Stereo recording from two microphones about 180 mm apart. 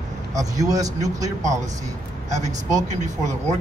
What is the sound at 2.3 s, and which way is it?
Speech, 40° right (ahead or behind).